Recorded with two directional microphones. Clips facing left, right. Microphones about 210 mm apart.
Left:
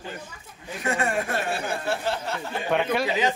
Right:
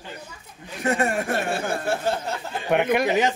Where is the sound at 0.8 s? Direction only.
40° right (ahead or behind).